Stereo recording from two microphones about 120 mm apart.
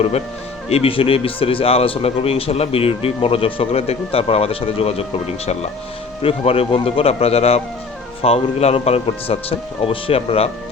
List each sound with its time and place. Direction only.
0.7 s speech: 50° left (ahead or behind)
6.2 s speech: 55° left (ahead or behind)